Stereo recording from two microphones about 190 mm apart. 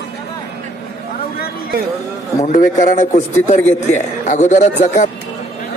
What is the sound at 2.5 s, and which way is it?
Speech, 40° left (ahead or behind).